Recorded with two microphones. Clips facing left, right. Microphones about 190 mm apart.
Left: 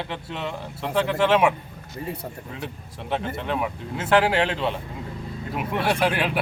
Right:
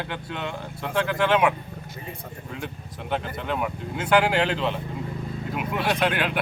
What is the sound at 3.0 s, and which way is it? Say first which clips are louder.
A man's voice: left 1 dB; centre (ahead or behind).